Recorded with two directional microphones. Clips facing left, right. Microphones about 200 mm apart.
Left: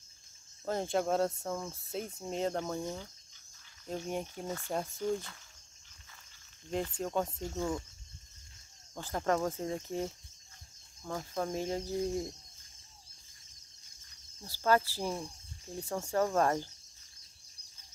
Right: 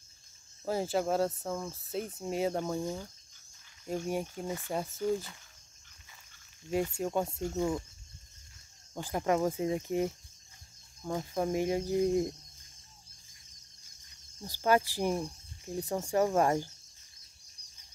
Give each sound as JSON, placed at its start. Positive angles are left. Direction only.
{"t": 0.7, "sound": "speech", "side_deg": -5}
{"t": 6.7, "sound": "speech", "side_deg": -10}
{"t": 8.9, "sound": "speech", "side_deg": -15}
{"t": 14.4, "sound": "speech", "side_deg": -15}